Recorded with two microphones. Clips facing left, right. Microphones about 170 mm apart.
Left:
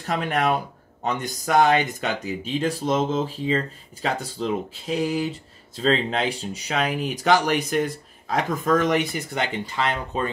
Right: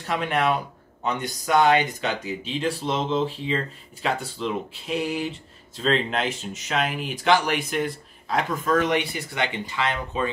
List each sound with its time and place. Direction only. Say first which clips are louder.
0.0 s speech: even; 45° left (ahead or behind)